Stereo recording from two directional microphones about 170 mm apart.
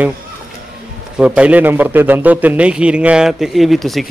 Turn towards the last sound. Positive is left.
turn(degrees=0)  # may be behind; listen again after turning